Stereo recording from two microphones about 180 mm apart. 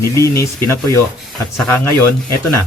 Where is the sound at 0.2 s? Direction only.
15° left (ahead or behind).